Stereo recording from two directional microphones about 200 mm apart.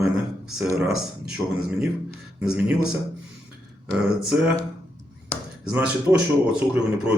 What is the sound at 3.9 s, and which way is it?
Speech, 5° right (ahead or behind).